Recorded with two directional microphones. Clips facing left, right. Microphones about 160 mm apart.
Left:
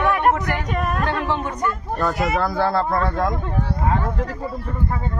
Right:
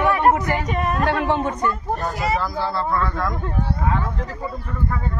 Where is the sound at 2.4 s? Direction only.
60° left (ahead or behind).